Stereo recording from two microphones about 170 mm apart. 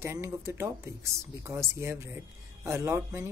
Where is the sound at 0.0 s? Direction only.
15° right (ahead or behind).